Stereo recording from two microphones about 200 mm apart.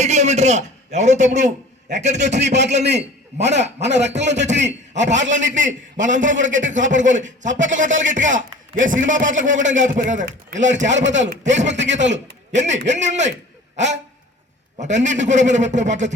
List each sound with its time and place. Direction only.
0.0 s a sound: 35° right (ahead or behind)
2.0 s a man's voice: 35° right (ahead or behind)
2.4 s a man's voice: 60° right (ahead or behind)
2.9 s a man's voice: 35° right (ahead or behind)
10.8 s a man's voice: 65° right (ahead or behind)
12.9 s a man's voice: 35° right (ahead or behind)
13.7 s dog: 35° right (ahead or behind)
14.8 s a man's voice: 35° right (ahead or behind)